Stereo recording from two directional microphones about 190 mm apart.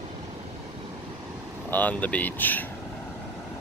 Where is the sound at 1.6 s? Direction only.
10° left (ahead or behind).